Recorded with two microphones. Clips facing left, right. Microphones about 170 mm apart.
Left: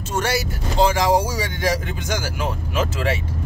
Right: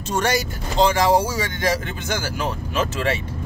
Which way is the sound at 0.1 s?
5° left (ahead or behind).